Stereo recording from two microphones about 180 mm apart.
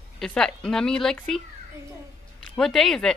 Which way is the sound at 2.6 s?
Centre (ahead or behind).